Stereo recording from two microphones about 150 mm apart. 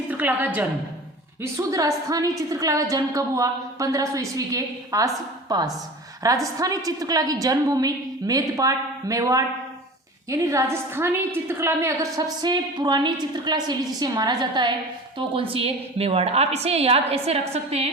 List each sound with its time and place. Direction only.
0.1 s a woman's voice: 10° right (ahead or behind); by 17.8 s 45° right (ahead or behind)